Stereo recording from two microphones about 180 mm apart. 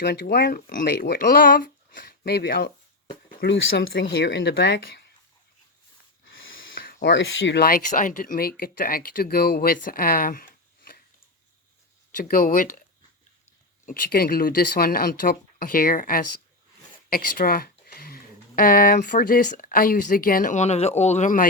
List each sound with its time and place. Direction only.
0.0 s speech: 60° left (ahead or behind)
3.4 s speech: 70° left (ahead or behind)
6.3 s snort: 90° left
6.8 s speech: 70° left (ahead or behind); by 11.0 s 55° left (ahead or behind)
12.1 s speech: 50° left (ahead or behind)
13.8 s speech: 50° left (ahead or behind)